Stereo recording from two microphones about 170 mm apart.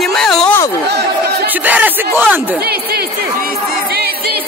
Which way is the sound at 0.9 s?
75° right (ahead or behind).